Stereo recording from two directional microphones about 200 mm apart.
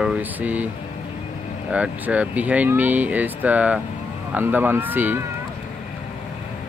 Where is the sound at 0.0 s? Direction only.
5° right (ahead or behind).